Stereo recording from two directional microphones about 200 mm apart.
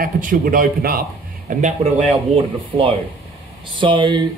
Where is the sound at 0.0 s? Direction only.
45° right (ahead or behind).